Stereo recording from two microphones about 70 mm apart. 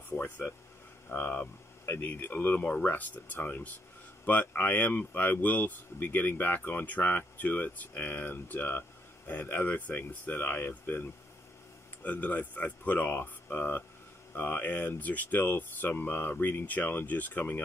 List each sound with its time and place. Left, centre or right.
0.1 s speech: left